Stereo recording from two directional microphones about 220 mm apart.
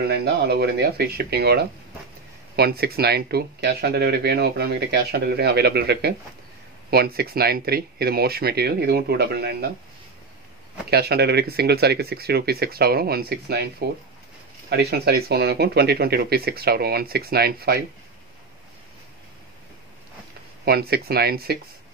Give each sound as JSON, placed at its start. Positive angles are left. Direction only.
{"t": 0.0, "sound": "speech", "side_deg": -45}
{"t": 10.9, "sound": "speech", "side_deg": -45}
{"t": 20.6, "sound": "speech", "side_deg": -45}